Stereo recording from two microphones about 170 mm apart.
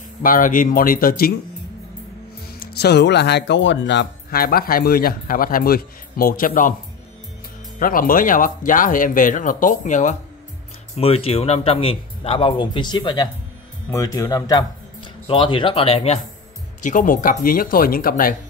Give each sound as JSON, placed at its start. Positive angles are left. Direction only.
{"t": 0.2, "sound": "speech", "side_deg": 55}
{"t": 2.6, "sound": "speech", "side_deg": 75}
{"t": 7.8, "sound": "speech", "side_deg": 55}
{"t": 11.0, "sound": "speech", "side_deg": 35}
{"t": 16.8, "sound": "speech", "side_deg": 50}